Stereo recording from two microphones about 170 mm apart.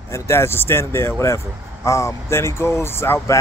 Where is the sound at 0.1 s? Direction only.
15° left (ahead or behind).